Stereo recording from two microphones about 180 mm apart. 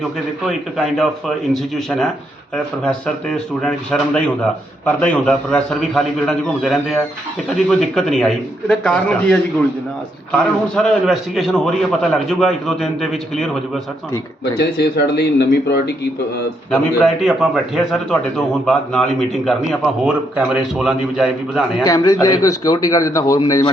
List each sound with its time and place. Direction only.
0.4 s a man's voice: centre (ahead or behind)
14.6 s speech: 65° left (ahead or behind)
16.7 s a man's voice: 5° left (ahead or behind)
21.8 s a man's voice: 20° left (ahead or behind)